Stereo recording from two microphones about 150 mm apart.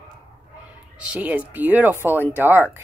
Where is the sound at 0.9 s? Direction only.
5° right (ahead or behind).